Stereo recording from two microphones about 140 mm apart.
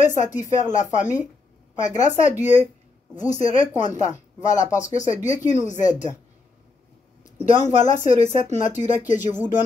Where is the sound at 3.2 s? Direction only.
60° left (ahead or behind).